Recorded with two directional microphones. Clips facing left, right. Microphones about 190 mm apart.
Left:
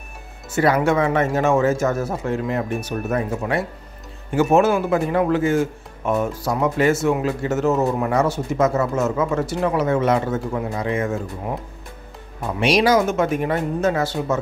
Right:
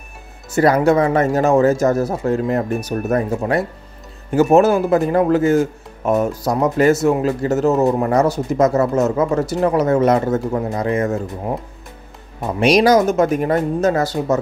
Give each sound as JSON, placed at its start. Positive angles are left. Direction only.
{"t": 0.5, "sound": "speech", "side_deg": -40}
{"t": 12.5, "sound": "speech", "side_deg": -40}